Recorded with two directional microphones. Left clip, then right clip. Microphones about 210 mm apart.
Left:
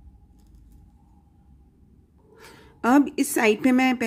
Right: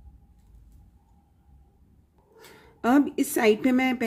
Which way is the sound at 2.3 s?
10° left (ahead or behind).